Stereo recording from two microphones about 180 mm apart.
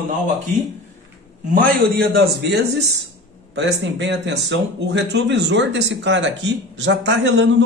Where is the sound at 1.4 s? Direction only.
50° right (ahead or behind).